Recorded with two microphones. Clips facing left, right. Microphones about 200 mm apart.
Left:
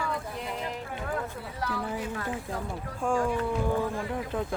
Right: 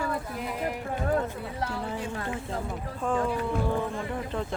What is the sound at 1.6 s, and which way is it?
Speech, 30° right (ahead or behind).